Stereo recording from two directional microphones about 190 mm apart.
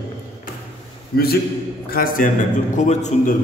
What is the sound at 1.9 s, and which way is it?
A man's voice, 50° left (ahead or behind).